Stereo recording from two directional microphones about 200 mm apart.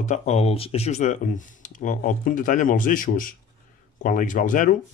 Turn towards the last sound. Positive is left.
turn(degrees=40)  # may be behind; listen again after turning